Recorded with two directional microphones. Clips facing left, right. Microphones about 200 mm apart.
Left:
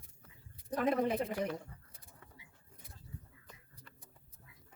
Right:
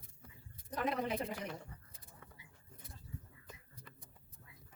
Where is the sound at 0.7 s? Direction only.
50° left (ahead or behind).